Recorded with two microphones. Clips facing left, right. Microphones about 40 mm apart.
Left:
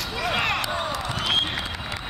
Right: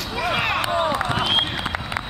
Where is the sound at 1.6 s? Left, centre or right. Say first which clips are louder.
Right 6 dB; right.